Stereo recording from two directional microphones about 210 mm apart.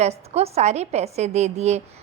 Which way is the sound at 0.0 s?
30° right (ahead or behind).